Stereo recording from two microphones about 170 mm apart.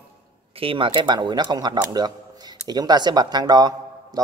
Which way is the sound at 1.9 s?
25° right (ahead or behind).